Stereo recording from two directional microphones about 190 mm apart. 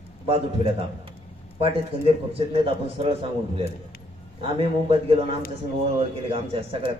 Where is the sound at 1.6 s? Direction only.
30° right (ahead or behind).